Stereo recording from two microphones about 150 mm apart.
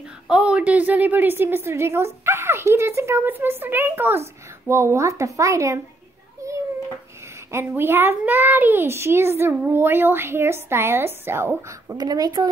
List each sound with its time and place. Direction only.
0.3 s a woman's voice: 5° right (ahead or behind)
6.4 s a sound: 20° right (ahead or behind)
7.5 s a woman's voice: 15° right (ahead or behind)